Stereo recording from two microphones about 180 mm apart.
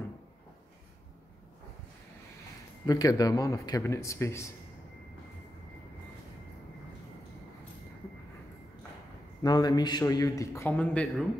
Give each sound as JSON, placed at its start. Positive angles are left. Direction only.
{"t": 2.9, "sound": "a man's voice", "side_deg": 20}
{"t": 9.4, "sound": "a man's voice", "side_deg": 20}